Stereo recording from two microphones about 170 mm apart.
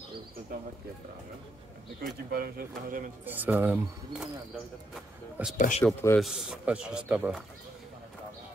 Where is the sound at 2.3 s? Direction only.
65° right (ahead or behind).